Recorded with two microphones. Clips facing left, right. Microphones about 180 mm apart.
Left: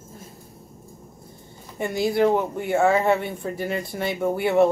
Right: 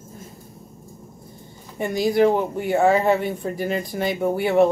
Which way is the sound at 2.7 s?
35° right (ahead or behind).